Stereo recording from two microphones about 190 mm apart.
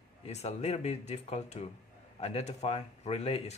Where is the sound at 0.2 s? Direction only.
35° left (ahead or behind).